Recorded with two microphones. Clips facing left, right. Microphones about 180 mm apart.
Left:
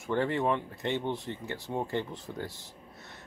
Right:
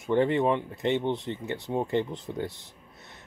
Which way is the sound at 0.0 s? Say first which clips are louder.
Right 5 dB; 20° right (ahead or behind).